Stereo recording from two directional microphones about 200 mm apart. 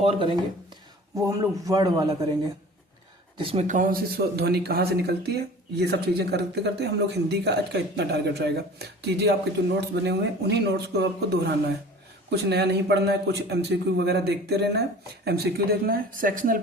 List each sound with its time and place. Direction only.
0.0 s speech: 25° right (ahead or behind)
1.2 s a man's voice: 15° right (ahead or behind)
3.3 s speech: 25° right (ahead or behind); by 16.6 s 45° right (ahead or behind)